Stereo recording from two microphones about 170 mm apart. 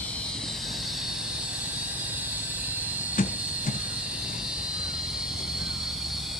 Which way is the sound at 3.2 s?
50° left (ahead or behind).